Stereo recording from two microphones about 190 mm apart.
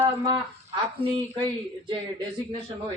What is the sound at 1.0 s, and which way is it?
Speech, 30° right (ahead or behind).